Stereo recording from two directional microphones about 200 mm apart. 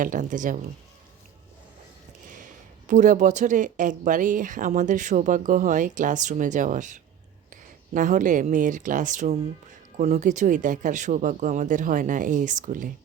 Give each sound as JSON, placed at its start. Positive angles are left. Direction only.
{"t": 0.0, "sound": "speech", "side_deg": -40}
{"t": 2.3, "sound": "speech", "side_deg": -40}